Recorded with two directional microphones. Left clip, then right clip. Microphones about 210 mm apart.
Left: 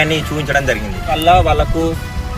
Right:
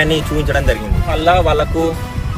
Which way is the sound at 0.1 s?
25° right (ahead or behind).